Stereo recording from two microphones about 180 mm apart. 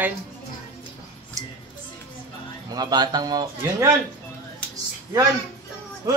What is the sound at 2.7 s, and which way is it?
A man's voice, 20° right (ahead or behind).